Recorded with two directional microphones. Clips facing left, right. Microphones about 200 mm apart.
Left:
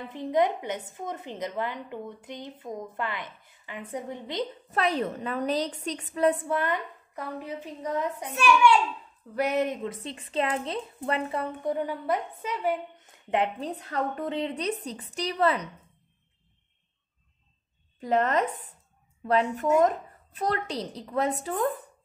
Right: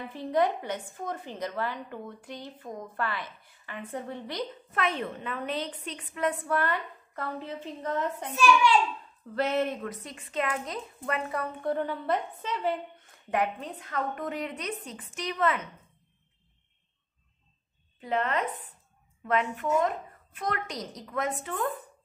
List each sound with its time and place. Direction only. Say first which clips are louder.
0.1 s a woman's voice: left 2 dB; 20° left (ahead or behind)
4.6 s a woman's voice: left 4 dB; 40° left (ahead or behind)
6.5 s a woman's voice: left 1 dB; 20° left (ahead or behind)
8.3 s a child's voice: left 2 dB; 65° left (ahead or behind)
9.3 s a woman's voice: left 1 dB; 15° left (ahead or behind)
11.7 s a woman's voice: even; 10° left (ahead or behind)
13.3 s a woman's voice: left 2 dB; 25° left (ahead or behind)
18.0 s a woman's voice: left 4 dB; 40° left (ahead or behind)